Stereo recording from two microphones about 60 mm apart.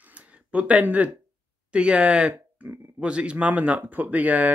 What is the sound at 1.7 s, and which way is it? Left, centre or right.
Speech, centre.